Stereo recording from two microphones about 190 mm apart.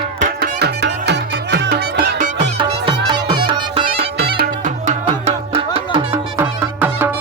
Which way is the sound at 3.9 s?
55° right (ahead or behind).